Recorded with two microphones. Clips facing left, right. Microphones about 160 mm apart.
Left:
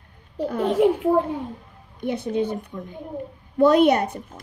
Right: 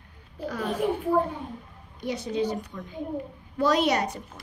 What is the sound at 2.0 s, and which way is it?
A woman's voice, 55° left (ahead or behind).